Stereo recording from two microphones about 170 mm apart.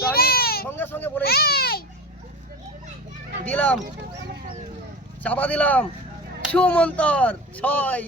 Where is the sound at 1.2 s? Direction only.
65° left (ahead or behind).